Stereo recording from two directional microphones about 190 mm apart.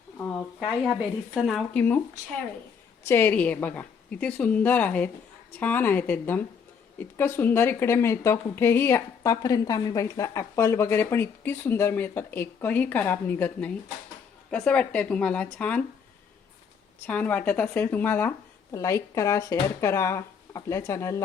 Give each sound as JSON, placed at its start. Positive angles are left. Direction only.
{"t": 0.9, "sound": "speech", "side_deg": 0}
{"t": 3.0, "sound": "speech", "side_deg": 10}
{"t": 17.1, "sound": "speech", "side_deg": 5}